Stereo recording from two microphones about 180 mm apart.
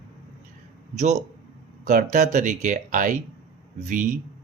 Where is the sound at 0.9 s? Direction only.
40° right (ahead or behind).